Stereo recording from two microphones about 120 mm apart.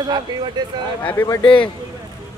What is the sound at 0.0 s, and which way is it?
Speech, 35° right (ahead or behind).